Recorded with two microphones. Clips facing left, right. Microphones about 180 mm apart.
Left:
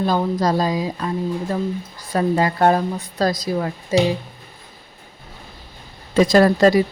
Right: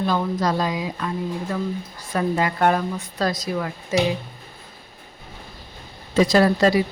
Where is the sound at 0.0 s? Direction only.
35° left (ahead or behind).